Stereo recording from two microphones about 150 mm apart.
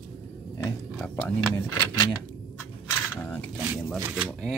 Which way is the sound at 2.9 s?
10° left (ahead or behind).